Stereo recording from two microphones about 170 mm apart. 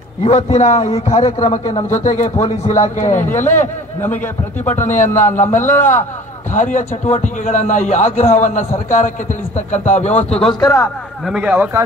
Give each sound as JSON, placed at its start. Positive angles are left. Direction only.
{"t": 0.2, "sound": "a man's voice", "side_deg": 40}
{"t": 3.5, "sound": "speech", "side_deg": 15}
{"t": 4.8, "sound": "a man's voice", "side_deg": 45}
{"t": 5.1, "sound": "speech", "side_deg": 15}
{"t": 6.5, "sound": "a man's voice", "side_deg": 50}
{"t": 10.6, "sound": "speech", "side_deg": 15}
{"t": 11.2, "sound": "speech", "side_deg": -5}